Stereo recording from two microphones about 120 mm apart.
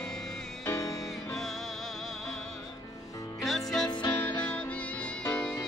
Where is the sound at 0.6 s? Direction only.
25° left (ahead or behind).